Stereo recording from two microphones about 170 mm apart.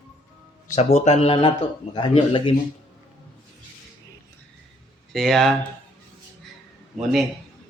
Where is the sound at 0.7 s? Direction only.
40° left (ahead or behind).